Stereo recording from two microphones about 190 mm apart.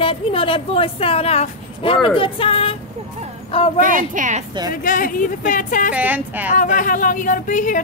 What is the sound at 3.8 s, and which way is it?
Speech, 45° right (ahead or behind).